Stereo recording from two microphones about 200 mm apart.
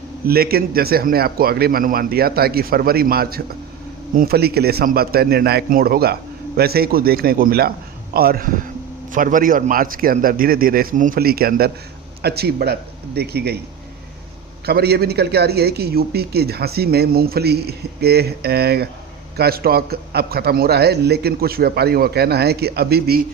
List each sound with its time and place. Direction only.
0.3 s speech: 50° right (ahead or behind)
14.7 s speech: 55° right (ahead or behind)